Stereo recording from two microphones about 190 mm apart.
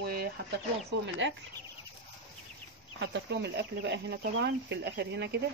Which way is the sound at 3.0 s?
65° right (ahead or behind).